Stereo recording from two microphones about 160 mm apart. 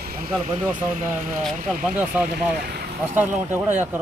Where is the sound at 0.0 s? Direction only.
70° right (ahead or behind).